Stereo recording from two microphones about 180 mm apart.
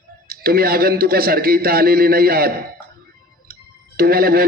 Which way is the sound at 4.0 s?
55° right (ahead or behind).